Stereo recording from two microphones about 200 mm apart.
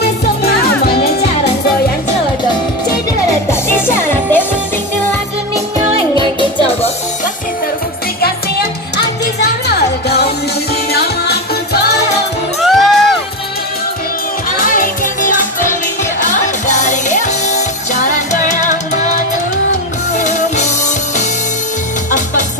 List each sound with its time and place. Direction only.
0.0 s music: 50° left (ahead or behind)
3.4 s music: 10° left (ahead or behind)
8.9 s music: 55° left (ahead or behind)
12.5 s music: centre (ahead or behind)
14.6 s music: 45° left (ahead or behind)